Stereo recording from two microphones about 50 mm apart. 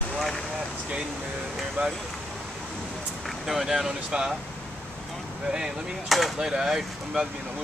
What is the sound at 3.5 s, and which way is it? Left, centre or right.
Speech, centre.